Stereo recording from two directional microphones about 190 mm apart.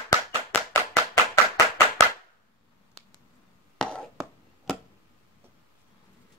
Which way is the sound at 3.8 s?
5° left (ahead or behind).